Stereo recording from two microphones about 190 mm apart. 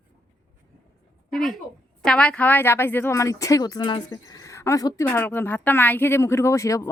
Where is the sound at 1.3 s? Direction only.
Centre (ahead or behind).